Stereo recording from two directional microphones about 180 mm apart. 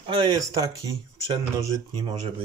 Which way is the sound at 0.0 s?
25° right (ahead or behind).